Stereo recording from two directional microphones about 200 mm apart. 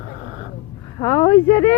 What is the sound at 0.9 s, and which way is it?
Speech, 25° left (ahead or behind).